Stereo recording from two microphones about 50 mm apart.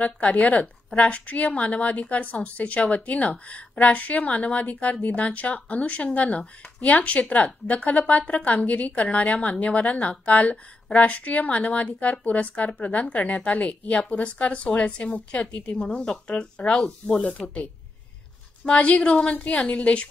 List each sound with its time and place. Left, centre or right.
0.0 s a woman's voice: left
18.7 s a woman's voice: left